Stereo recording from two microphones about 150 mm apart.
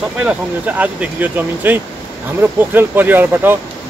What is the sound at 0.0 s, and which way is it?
Speech, 5° right (ahead or behind).